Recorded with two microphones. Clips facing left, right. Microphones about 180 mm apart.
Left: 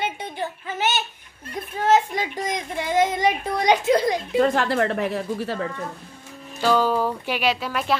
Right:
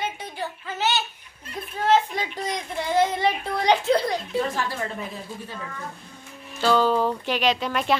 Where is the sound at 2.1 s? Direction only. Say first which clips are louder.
Left 2 dB; 15° left (ahead or behind).